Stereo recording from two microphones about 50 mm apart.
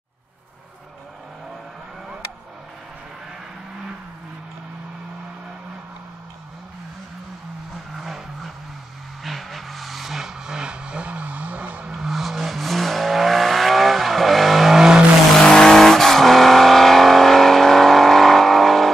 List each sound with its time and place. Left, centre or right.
7.9 s vehicle: centre; by 11.9 s right
11.9 s vehicle: centre
15.4 s vehicle: centre